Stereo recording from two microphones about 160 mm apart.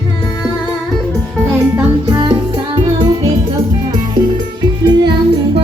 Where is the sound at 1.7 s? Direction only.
20° right (ahead or behind).